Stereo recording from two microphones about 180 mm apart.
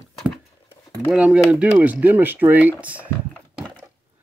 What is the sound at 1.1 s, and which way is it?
Speech, 5° right (ahead or behind).